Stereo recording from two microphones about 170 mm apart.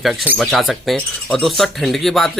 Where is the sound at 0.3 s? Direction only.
Centre (ahead or behind).